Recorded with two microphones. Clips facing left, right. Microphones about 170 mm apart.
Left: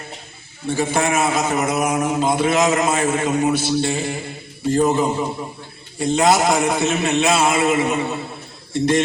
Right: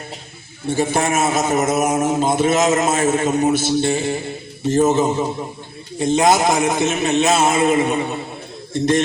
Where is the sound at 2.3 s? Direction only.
25° right (ahead or behind).